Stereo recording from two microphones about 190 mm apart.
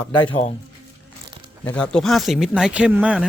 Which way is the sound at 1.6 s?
5° left (ahead or behind).